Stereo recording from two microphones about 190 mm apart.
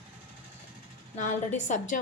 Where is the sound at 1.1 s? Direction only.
40° left (ahead or behind).